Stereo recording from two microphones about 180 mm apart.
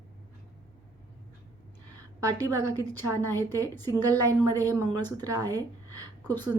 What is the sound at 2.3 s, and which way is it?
Speech, 20° right (ahead or behind).